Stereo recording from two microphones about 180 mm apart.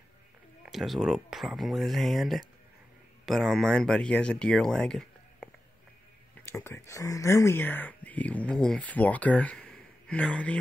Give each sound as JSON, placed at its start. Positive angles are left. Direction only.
{"t": 0.7, "sound": "speech", "side_deg": 0}